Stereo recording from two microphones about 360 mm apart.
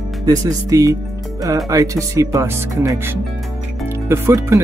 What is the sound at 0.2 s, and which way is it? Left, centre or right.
Speech, centre.